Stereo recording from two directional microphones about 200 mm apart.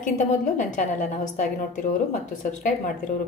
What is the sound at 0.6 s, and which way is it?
Speech, 35° left (ahead or behind).